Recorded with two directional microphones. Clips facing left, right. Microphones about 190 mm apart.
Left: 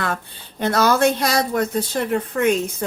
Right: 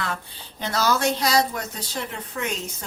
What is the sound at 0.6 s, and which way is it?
Speech, 55° left (ahead or behind).